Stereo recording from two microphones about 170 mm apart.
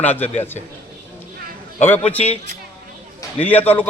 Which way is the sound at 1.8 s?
10° left (ahead or behind).